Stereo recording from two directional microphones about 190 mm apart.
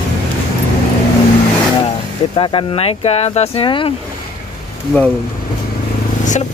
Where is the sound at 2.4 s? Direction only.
25° left (ahead or behind).